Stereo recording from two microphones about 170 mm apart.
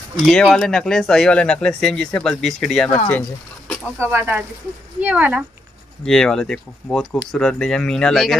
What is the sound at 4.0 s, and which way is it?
Speech, 10° right (ahead or behind).